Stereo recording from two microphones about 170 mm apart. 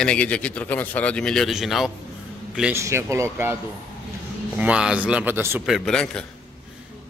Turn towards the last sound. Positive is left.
turn(degrees=5)  # may be behind; listen again after turning